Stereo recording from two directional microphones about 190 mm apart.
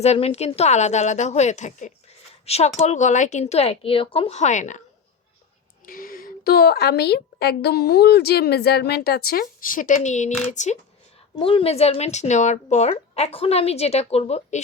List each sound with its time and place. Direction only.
0.0 s speech: 35° left (ahead or behind)
5.8 s a woman's voice: 50° left (ahead or behind)
11.3 s speech: 30° left (ahead or behind)